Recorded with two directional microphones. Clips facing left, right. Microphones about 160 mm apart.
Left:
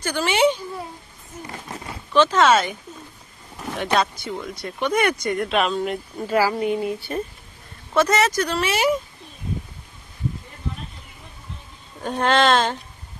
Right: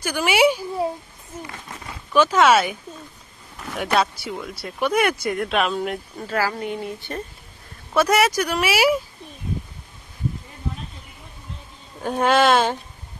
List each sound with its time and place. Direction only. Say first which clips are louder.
0.0 s speech: right 1 dB; 10° right (ahead or behind)
1.5 s speech: left 3 dB; 25° left (ahead or behind)
2.1 s speech: even; 10° right (ahead or behind)
3.7 s speech: even; 5° right (ahead or behind)
6.1 s a woman's voice: left 6 dB; 15° left (ahead or behind)
7.9 s speech: right 1 dB; 10° right (ahead or behind)
12.0 s speech: right 1 dB; 5° right (ahead or behind)